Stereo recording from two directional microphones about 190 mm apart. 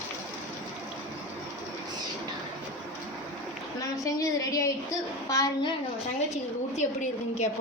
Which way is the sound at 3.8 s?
15° left (ahead or behind).